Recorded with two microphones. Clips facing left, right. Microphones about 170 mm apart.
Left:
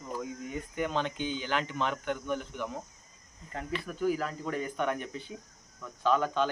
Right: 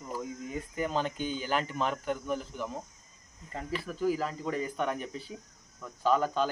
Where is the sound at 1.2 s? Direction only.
40° right (ahead or behind).